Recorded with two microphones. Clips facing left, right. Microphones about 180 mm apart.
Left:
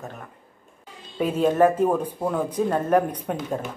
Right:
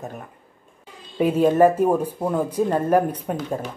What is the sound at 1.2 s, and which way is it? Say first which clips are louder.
Speech: right 3 dB; 10° right (ahead or behind).